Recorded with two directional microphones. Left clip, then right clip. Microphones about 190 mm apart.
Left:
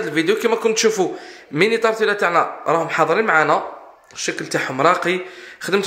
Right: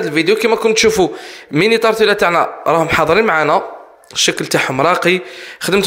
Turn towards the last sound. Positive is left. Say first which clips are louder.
# right 5 dB
turn(degrees=-40)  # may be behind; listen again after turning